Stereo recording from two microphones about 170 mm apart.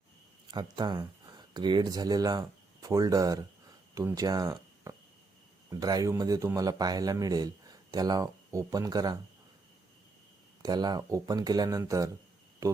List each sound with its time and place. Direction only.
0.5 s a man's voice: 25° right (ahead or behind)
10.6 s a man's voice: 25° right (ahead or behind)